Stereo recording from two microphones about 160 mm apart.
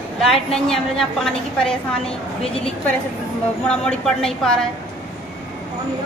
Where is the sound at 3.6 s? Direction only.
5° left (ahead or behind).